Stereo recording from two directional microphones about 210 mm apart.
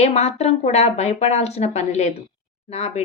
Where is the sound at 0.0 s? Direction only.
30° left (ahead or behind).